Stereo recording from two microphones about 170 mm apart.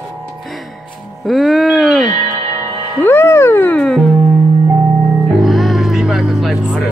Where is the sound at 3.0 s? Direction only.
15° left (ahead or behind).